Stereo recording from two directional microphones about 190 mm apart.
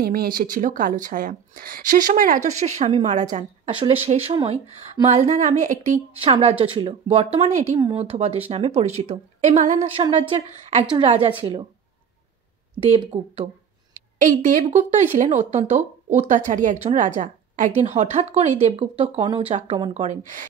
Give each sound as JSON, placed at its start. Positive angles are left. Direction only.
{"t": 0.0, "sound": "a woman's voice", "side_deg": -50}
{"t": 6.2, "sound": "a woman's voice", "side_deg": -25}
{"t": 12.9, "sound": "a woman's voice", "side_deg": -25}
{"t": 14.1, "sound": "a woman's voice", "side_deg": -40}